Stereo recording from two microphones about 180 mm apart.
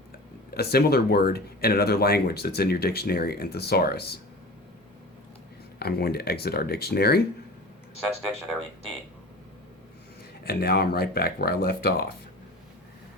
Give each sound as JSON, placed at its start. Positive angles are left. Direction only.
{"t": 0.5, "sound": "speech", "side_deg": 60}
{"t": 5.8, "sound": "speech", "side_deg": 60}
{"t": 10.4, "sound": "speech", "side_deg": 60}